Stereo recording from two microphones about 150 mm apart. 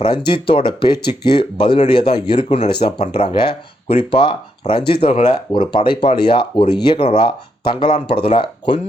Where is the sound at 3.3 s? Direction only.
35° left (ahead or behind).